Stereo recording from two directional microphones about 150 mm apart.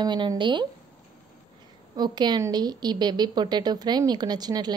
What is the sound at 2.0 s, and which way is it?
A woman's voice, 30° right (ahead or behind).